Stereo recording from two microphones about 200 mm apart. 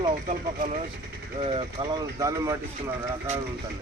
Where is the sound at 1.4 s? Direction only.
30° right (ahead or behind).